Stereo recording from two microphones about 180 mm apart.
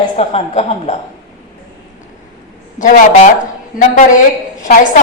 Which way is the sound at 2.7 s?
45° left (ahead or behind).